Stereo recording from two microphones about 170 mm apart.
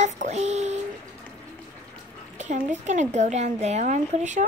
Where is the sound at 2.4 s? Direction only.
45° right (ahead or behind).